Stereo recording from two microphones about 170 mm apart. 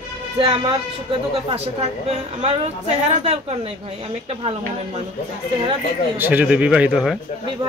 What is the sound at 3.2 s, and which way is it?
Speech, 35° right (ahead or behind).